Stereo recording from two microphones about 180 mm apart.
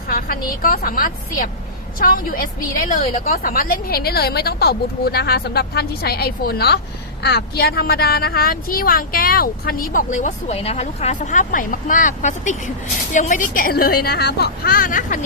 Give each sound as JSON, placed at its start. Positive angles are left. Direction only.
{"t": 0.6, "sound": "speech", "side_deg": 55}